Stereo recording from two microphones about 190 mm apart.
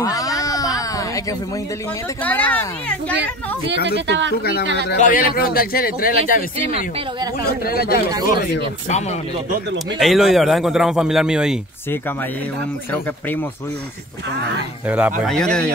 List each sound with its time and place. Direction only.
0.0 s a sound: 20° left (ahead or behind)
2.2 s speech: 10° left (ahead or behind)
4.9 s a man's voice: 45° left (ahead or behind)
7.6 s a man's voice: 55° left (ahead or behind)
9.9 s a man's voice: centre (ahead or behind)
14.9 s a man's voice: 5° right (ahead or behind)